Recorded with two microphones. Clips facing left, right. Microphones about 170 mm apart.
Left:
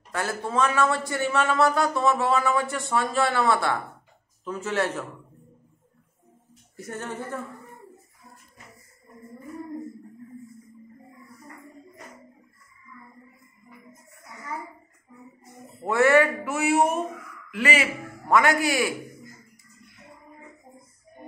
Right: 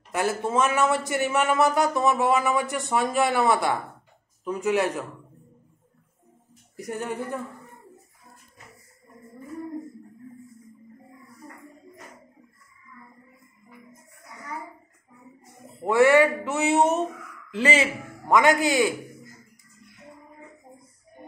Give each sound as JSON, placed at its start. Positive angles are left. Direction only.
{"t": 0.1, "sound": "a man's voice", "side_deg": -20}
{"t": 6.8, "sound": "speech", "side_deg": -15}
{"t": 15.6, "sound": "a man's voice", "side_deg": -15}